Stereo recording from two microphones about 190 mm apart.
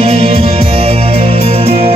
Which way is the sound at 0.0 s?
30° right (ahead or behind).